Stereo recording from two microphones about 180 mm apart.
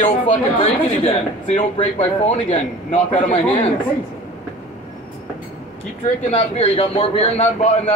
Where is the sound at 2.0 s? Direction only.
35° left (ahead or behind).